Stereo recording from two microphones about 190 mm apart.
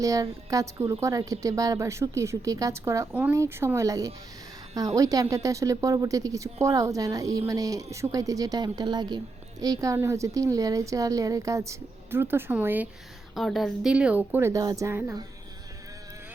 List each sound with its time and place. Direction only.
0.0 s speech: 15° right (ahead or behind)